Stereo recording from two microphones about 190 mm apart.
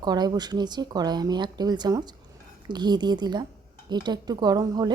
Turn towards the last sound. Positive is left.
turn(degrees=-20)  # may be behind; listen again after turning